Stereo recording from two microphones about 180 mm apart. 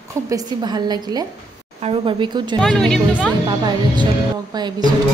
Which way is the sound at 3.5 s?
25° right (ahead or behind).